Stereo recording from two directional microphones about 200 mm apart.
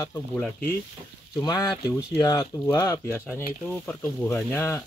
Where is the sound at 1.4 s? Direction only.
20° left (ahead or behind).